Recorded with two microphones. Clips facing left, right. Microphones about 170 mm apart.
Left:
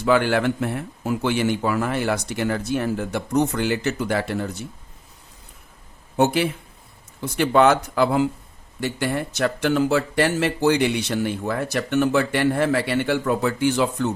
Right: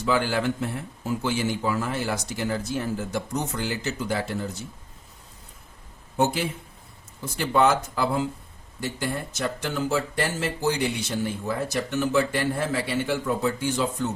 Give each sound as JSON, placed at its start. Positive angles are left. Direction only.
{"t": 0.0, "sound": "a man's voice", "side_deg": 65}
{"t": 6.1, "sound": "speech", "side_deg": 70}